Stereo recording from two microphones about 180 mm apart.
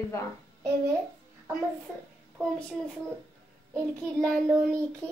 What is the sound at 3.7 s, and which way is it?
Speech, 5° left (ahead or behind).